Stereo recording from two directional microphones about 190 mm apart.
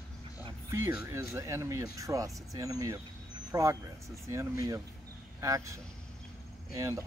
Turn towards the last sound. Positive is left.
turn(degrees=-15)  # may be behind; listen again after turning